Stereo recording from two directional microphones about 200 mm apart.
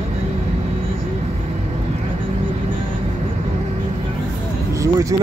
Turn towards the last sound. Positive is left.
turn(degrees=-15)  # may be behind; listen again after turning